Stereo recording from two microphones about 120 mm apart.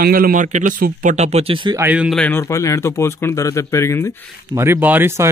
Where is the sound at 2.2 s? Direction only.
20° left (ahead or behind).